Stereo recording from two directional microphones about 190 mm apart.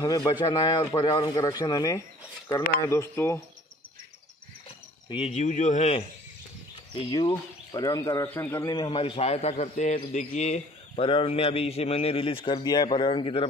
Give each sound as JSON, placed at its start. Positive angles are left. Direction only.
{"t": 0.0, "sound": "a man's voice", "side_deg": 20}
{"t": 5.1, "sound": "speech", "side_deg": 35}
{"t": 7.1, "sound": "a man's voice", "side_deg": 20}
{"t": 8.7, "sound": "a man's voice", "side_deg": 25}